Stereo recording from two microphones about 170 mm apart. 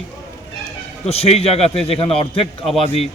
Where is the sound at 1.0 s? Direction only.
35° left (ahead or behind).